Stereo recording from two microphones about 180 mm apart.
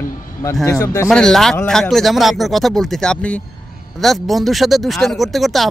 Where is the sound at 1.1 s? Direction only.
5° left (ahead or behind).